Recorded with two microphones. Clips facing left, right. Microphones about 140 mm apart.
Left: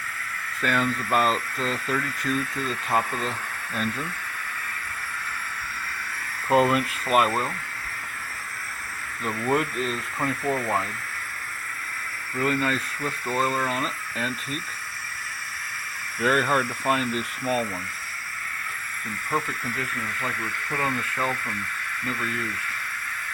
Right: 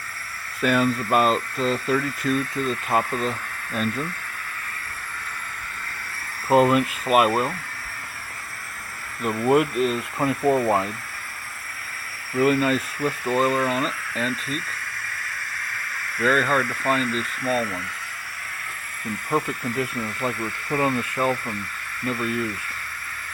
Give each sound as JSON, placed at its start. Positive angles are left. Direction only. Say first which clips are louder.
{"t": 0.6, "sound": "speech", "louder": "right 5 dB", "side_deg": -10}
{"t": 6.5, "sound": "speech", "louder": "right 3 dB", "side_deg": 0}
{"t": 9.5, "sound": "speech", "louder": "right 6 dB", "side_deg": -10}
{"t": 10.2, "sound": "speech", "louder": "right 6 dB", "side_deg": -25}
{"t": 12.4, "sound": "speech", "louder": "right 6 dB", "side_deg": -10}
{"t": 16.2, "sound": "speech", "louder": "right 2 dB", "side_deg": 15}
{"t": 20.2, "sound": "speech", "louder": "right 6 dB", "side_deg": -15}